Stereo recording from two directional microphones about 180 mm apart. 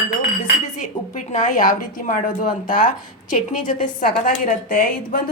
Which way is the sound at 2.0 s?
45° left (ahead or behind).